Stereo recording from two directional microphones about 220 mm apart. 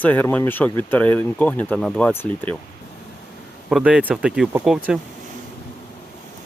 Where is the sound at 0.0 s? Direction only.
5° left (ahead or behind).